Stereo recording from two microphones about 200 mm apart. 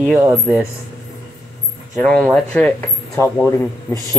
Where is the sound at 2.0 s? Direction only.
5° left (ahead or behind).